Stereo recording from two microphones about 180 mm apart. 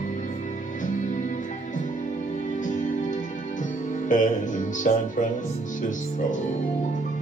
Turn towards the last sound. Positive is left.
turn(degrees=45)  # may be behind; listen again after turning